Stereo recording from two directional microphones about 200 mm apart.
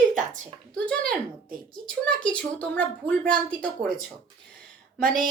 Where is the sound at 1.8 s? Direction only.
5° left (ahead or behind).